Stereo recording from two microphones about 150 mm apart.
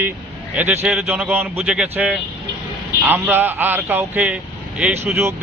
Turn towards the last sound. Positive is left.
turn(degrees=-10)  # may be behind; listen again after turning